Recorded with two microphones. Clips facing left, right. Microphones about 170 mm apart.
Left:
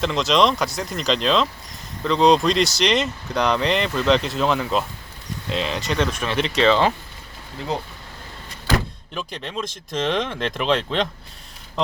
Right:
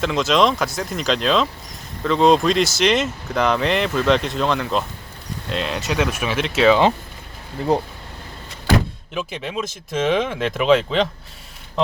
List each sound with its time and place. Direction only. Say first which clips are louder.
0.0 s speech: right 1 dB; centre (ahead or behind)
9.1 s speech: right 4 dB; 5° right (ahead or behind)